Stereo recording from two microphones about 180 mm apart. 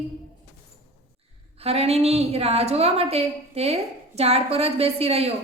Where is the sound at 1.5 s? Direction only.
35° right (ahead or behind).